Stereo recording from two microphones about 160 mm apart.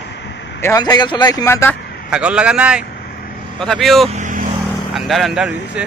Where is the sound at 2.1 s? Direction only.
5° right (ahead or behind).